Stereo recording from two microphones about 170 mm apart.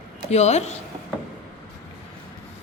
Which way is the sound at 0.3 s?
40° left (ahead or behind).